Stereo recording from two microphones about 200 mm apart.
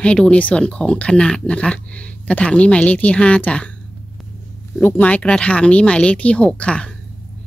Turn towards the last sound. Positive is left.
turn(degrees=5)  # may be behind; listen again after turning